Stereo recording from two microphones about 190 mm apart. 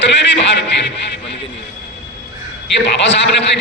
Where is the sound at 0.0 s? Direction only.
65° left (ahead or behind).